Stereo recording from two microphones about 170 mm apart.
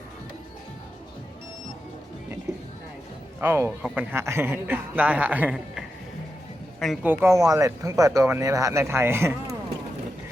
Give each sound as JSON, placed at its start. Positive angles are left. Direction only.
{"t": 3.4, "sound": "a man's voice", "side_deg": -15}
{"t": 7.0, "sound": "speech", "side_deg": -15}